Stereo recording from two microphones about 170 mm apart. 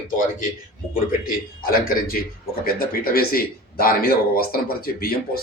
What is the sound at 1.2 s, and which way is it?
Speech, 55° left (ahead or behind).